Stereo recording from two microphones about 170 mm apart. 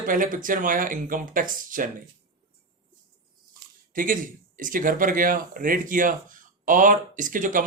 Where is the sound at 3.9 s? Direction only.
55° right (ahead or behind).